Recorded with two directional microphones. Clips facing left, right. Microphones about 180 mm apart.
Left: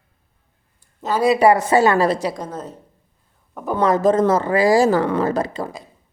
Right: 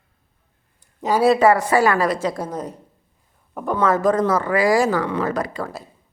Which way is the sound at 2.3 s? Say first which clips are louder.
Right 2 dB; 10° right (ahead or behind).